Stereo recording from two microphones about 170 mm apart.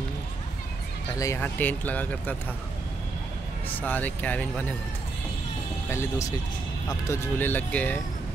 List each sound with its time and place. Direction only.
1.1 s speech: 20° left (ahead or behind)
3.6 s speech: 10° left (ahead or behind)
5.9 s speech: 15° left (ahead or behind)